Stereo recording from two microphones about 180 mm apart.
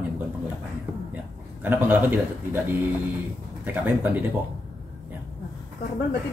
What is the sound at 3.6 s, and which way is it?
Speech, 10° right (ahead or behind).